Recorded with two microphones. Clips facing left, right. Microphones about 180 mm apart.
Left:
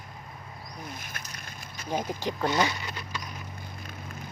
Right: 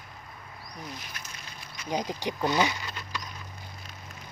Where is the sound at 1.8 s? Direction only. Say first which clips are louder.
Even; 15° right (ahead or behind).